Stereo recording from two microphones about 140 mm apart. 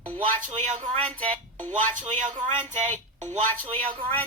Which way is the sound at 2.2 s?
65° right (ahead or behind).